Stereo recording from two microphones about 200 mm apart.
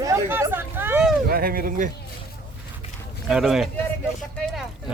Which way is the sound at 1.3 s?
50° right (ahead or behind).